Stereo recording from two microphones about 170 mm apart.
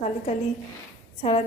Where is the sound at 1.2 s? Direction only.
40° left (ahead or behind).